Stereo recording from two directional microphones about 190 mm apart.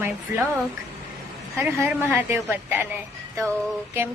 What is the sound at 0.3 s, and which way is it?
Speech, 10° right (ahead or behind).